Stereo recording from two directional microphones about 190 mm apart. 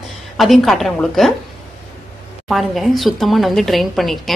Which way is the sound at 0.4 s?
Centre (ahead or behind).